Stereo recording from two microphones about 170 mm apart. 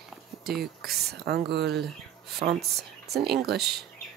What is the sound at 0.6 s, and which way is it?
Speech, 70° right (ahead or behind).